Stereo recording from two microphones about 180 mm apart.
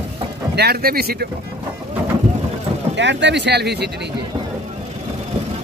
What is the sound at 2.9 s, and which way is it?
Speech, 80° right.